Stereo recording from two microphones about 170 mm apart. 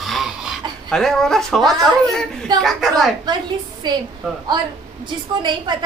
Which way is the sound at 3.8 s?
25° right (ahead or behind).